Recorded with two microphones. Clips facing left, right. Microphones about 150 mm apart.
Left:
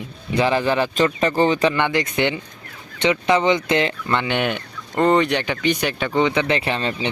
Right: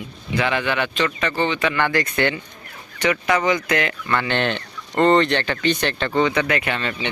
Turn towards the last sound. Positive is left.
turn(degrees=30)  # may be behind; listen again after turning